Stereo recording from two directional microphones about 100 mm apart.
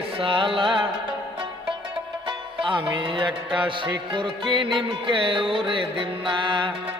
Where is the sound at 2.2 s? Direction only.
55° right (ahead or behind).